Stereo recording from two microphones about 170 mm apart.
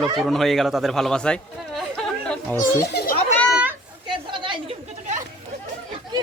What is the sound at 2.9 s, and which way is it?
Children playing, 65° left (ahead or behind).